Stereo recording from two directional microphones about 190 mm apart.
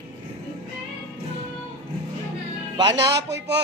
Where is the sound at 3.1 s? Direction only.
65° right (ahead or behind).